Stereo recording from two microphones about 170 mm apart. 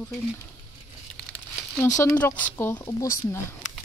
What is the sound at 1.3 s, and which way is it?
Speech, 15° left (ahead or behind).